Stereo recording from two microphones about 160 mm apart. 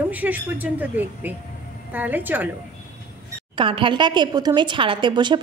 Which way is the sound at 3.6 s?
30° right (ahead or behind).